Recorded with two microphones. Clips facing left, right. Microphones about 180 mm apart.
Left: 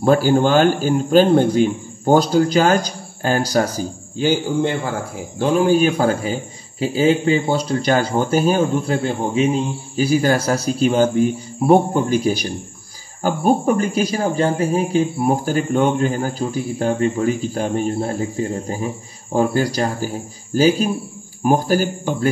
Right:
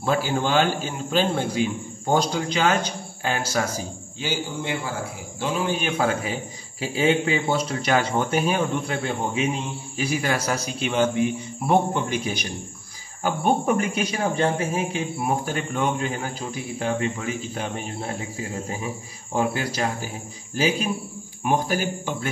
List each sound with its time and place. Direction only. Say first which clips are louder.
0.0 s a man's voice: left 9 dB; 40° left (ahead or behind)
4.2 s a man's voice: left 11 dB; 55° left (ahead or behind)
5.4 s speech: left 9 dB; 45° left (ahead or behind)
5.9 s a man's voice: left 6 dB; 35° left (ahead or behind)